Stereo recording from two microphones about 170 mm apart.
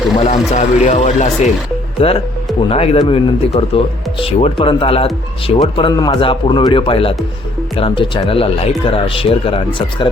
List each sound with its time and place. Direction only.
0.3 s speech: 45° left (ahead or behind)
2.0 s speech: 35° left (ahead or behind)